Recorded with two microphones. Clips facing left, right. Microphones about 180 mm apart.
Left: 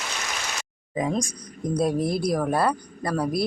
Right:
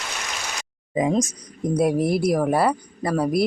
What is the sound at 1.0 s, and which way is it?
Speech, 20° right (ahead or behind).